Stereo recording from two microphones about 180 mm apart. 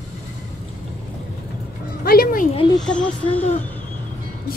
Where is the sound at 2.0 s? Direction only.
55° left (ahead or behind).